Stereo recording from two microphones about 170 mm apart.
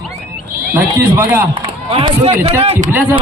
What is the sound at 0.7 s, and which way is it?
Speech, 15° right (ahead or behind).